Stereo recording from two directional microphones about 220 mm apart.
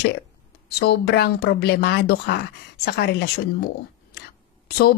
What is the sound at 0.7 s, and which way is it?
Speech, 45° left (ahead or behind).